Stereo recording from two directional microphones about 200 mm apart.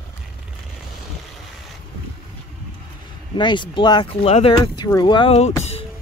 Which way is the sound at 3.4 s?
25° left (ahead or behind).